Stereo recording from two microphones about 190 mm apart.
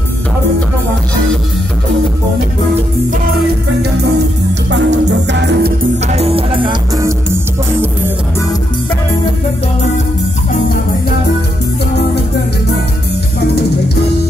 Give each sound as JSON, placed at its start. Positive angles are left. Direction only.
{"t": 4.6, "sound": "music", "side_deg": -70}
{"t": 6.1, "sound": "music", "side_deg": -30}
{"t": 7.0, "sound": "music", "side_deg": -15}